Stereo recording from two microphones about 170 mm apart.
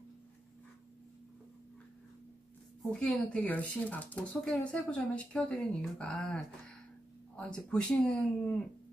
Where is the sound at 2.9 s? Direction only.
5° left (ahead or behind).